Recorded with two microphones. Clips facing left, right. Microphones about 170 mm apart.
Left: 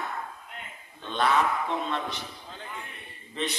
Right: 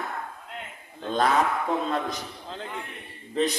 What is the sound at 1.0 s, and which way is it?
A man's voice, 40° right (ahead or behind).